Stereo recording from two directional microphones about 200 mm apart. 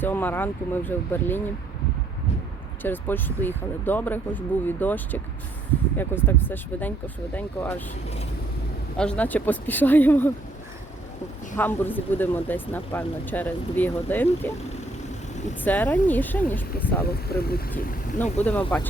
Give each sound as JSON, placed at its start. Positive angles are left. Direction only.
{"t": 0.0, "sound": "speech", "side_deg": 10}
{"t": 2.8, "sound": "speech", "side_deg": 10}
{"t": 9.0, "sound": "speech", "side_deg": 5}
{"t": 11.5, "sound": "speech", "side_deg": 10}
{"t": 15.6, "sound": "speech", "side_deg": 10}
{"t": 17.3, "sound": "speech", "side_deg": 50}
{"t": 18.2, "sound": "speech", "side_deg": 10}